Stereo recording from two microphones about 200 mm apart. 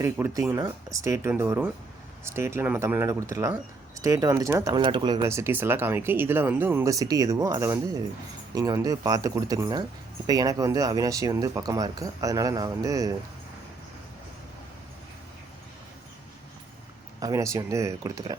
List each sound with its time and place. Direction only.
0.0 s speech: 10° right (ahead or behind)
17.2 s speech: 15° right (ahead or behind)